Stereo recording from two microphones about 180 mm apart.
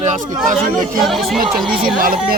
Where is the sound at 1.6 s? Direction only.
25° right (ahead or behind).